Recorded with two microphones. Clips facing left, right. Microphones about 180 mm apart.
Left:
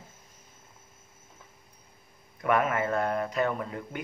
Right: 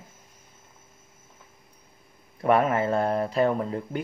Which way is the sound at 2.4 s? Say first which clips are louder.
Right 4 dB; 30° right (ahead or behind).